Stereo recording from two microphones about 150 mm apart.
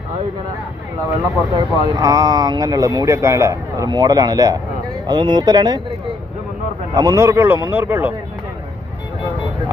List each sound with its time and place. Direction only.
1.5 s speech: 20° right (ahead or behind)
6.9 s speech: 25° right (ahead or behind)